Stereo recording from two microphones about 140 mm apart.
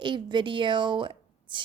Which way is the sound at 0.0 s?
35° right (ahead or behind).